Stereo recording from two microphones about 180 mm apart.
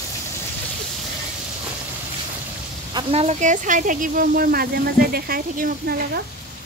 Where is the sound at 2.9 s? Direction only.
30° right (ahead or behind); by 6.2 s 55° right (ahead or behind).